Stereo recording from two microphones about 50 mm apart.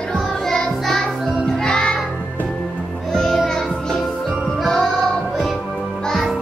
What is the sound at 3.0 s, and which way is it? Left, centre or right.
Music, centre.